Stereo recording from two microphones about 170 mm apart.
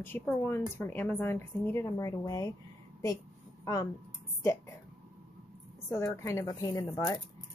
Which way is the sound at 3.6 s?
20° left (ahead or behind).